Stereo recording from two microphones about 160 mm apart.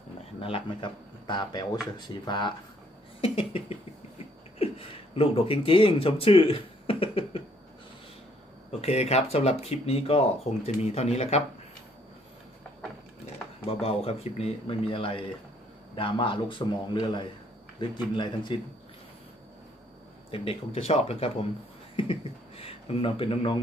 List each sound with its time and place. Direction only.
0.4 s a man's voice: 35° left (ahead or behind)
8.8 s speech: 40° left (ahead or behind)
13.7 s speech: 40° left (ahead or behind)
20.2 s speech: 35° left (ahead or behind)